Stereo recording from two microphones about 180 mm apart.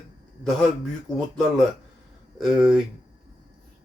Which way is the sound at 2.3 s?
Centre (ahead or behind).